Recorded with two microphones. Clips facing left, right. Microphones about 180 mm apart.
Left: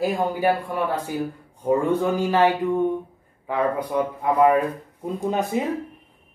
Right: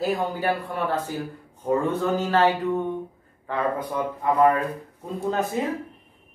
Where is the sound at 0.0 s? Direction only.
10° left (ahead or behind).